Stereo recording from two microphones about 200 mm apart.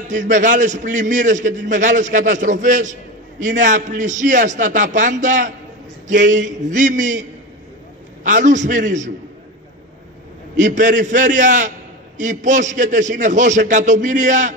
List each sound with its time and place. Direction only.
0.3 s a man's voice: 40° right (ahead or behind)
10.5 s a man's voice: 40° right (ahead or behind)